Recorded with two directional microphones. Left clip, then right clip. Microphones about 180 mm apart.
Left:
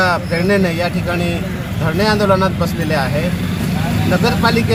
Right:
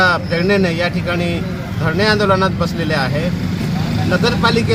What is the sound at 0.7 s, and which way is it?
Speech, 35° right (ahead or behind).